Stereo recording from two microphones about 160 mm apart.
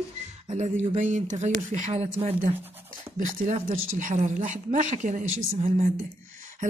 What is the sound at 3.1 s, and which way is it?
Speech, 50° right (ahead or behind).